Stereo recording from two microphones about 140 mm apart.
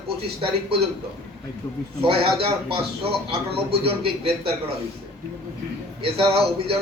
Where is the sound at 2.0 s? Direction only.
45° right (ahead or behind).